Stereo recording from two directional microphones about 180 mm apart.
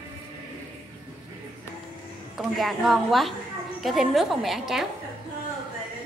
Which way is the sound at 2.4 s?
Centre (ahead or behind).